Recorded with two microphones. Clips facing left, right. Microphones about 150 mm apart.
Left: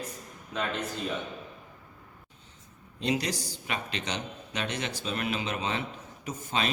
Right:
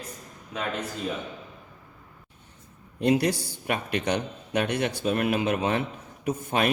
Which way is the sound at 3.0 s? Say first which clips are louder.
Right 7 dB; 55° right (ahead or behind).